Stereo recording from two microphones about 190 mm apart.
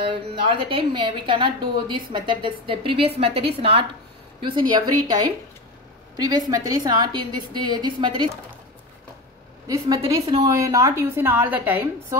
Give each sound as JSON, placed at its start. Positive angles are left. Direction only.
{"t": 0.1, "sound": "a woman's voice", "side_deg": -25}
{"t": 9.7, "sound": "a woman's voice", "side_deg": -20}